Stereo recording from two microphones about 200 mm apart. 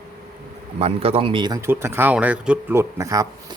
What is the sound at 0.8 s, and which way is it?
Speech, 30° right (ahead or behind).